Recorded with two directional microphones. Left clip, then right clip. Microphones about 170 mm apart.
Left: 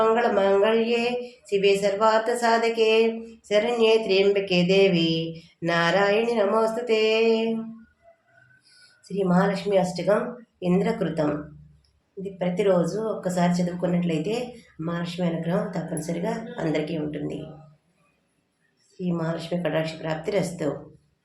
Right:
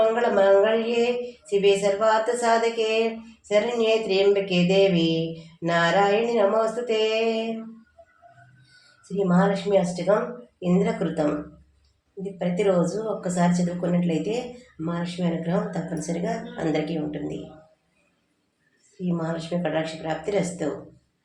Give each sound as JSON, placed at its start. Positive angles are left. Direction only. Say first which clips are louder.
{"t": 0.0, "sound": "a sound", "louder": "even", "side_deg": 25}
{"t": 0.6, "sound": "mantra", "louder": "even", "side_deg": 25}
{"t": 9.1, "sound": "mantra", "louder": "right 1 dB", "side_deg": 25}
{"t": 12.2, "sound": "speech", "louder": "even", "side_deg": 15}
{"t": 19.0, "sound": "mantra", "louder": "even", "side_deg": 20}